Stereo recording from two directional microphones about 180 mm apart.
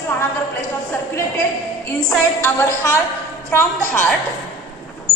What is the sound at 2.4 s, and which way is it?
A woman's voice, 15° left (ahead or behind).